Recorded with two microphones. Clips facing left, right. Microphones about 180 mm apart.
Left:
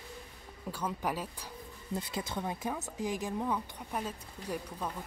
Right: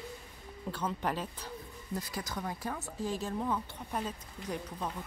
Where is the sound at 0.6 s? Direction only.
10° left (ahead or behind).